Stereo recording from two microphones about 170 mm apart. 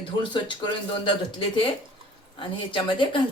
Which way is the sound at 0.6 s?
30° left (ahead or behind).